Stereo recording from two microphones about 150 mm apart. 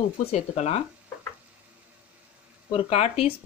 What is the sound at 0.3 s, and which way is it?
Speech, 45° left (ahead or behind).